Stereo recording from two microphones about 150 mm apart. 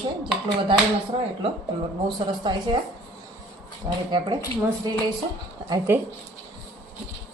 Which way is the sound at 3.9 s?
25° right (ahead or behind).